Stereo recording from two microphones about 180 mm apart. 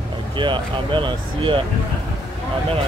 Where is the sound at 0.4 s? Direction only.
25° right (ahead or behind).